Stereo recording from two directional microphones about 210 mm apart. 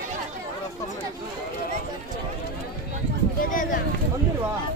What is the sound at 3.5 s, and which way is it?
Speech, 40° left (ahead or behind).